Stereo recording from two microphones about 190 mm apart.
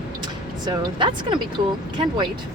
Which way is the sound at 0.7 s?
25° right (ahead or behind).